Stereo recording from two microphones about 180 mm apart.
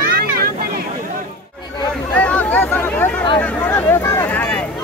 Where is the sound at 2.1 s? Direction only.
10° left (ahead or behind).